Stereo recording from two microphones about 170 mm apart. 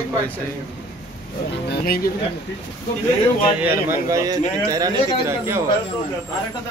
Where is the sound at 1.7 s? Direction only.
60° left (ahead or behind).